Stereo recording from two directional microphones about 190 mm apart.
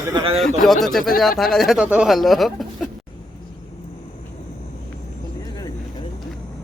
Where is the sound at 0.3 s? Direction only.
Centre (ahead or behind).